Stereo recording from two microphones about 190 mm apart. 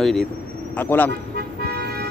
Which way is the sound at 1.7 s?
55° right (ahead or behind).